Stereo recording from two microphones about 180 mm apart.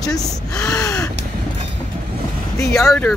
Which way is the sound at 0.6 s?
15° left (ahead or behind).